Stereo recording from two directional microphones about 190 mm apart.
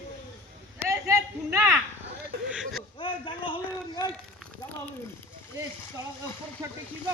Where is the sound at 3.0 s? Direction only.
25° left (ahead or behind).